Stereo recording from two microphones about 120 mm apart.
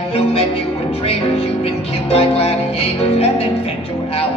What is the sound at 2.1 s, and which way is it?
Music, 55° left (ahead or behind).